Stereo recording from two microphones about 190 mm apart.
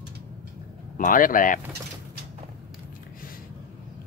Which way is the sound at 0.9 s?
45° left (ahead or behind).